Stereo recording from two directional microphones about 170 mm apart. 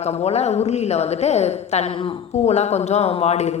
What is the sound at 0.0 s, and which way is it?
A woman's voice, 40° left (ahead or behind).